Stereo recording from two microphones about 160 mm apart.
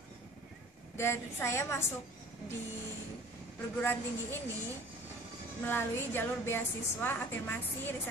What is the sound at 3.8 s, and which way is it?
Speech, 15° left (ahead or behind).